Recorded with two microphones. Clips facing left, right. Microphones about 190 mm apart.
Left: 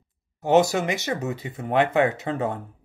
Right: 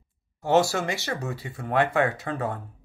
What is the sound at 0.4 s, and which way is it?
Speech, 20° left (ahead or behind).